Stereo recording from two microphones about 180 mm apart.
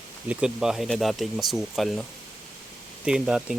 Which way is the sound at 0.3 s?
5° right (ahead or behind).